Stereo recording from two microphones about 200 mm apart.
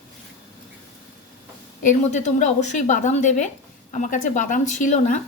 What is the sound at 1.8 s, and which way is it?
A woman's voice, 35° left (ahead or behind).